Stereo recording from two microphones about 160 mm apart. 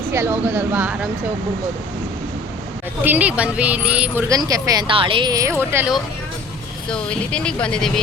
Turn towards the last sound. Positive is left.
turn(degrees=5)  # may be behind; listen again after turning